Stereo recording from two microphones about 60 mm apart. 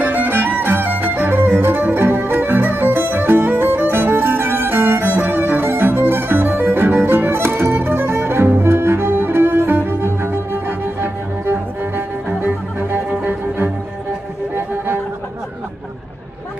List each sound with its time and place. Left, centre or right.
0.0 s music: right